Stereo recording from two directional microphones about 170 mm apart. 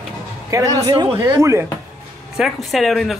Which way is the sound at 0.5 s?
20° right (ahead or behind).